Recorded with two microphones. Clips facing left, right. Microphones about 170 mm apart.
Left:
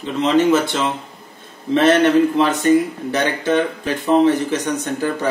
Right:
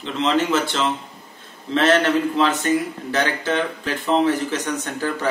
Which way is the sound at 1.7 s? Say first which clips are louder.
Left 4 dB; 15° left (ahead or behind).